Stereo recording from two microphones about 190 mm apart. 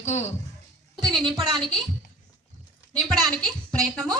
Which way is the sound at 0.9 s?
Centre (ahead or behind).